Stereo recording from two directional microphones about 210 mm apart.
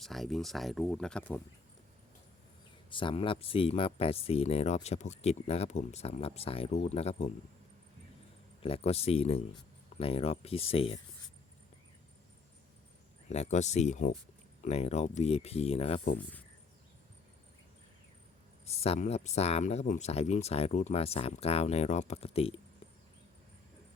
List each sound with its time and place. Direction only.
0.0 s speech: centre (ahead or behind)
2.9 s speech: 25° left (ahead or behind)
8.6 s speech: 30° left (ahead or behind)
13.2 s speech: 30° left (ahead or behind)
18.6 s speech: 30° left (ahead or behind)